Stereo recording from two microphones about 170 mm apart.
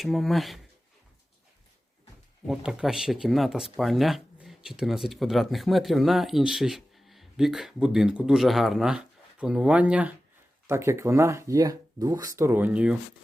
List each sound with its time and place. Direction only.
0.0 s speech: centre (ahead or behind)
2.5 s speech: 5° right (ahead or behind)